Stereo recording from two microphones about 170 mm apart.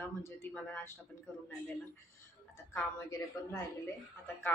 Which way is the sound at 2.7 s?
20° left (ahead or behind).